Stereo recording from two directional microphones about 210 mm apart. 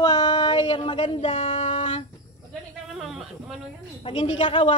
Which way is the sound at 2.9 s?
Centre (ahead or behind).